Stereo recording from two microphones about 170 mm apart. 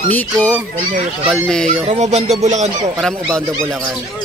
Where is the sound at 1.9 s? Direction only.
40° right (ahead or behind).